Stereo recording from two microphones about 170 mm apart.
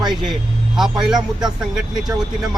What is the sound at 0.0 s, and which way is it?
Speech, 25° right (ahead or behind).